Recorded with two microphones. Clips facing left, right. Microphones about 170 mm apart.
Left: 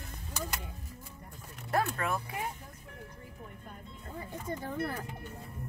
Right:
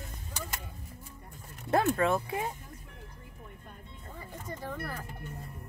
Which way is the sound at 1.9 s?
25° right (ahead or behind).